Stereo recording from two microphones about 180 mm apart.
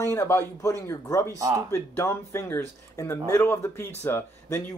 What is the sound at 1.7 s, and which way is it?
A man's voice, 15° left (ahead or behind).